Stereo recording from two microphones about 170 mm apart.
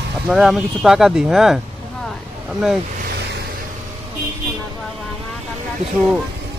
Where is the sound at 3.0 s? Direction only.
75° right (ahead or behind).